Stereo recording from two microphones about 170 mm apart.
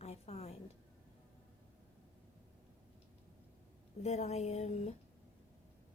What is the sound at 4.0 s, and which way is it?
Speech, 40° left (ahead or behind).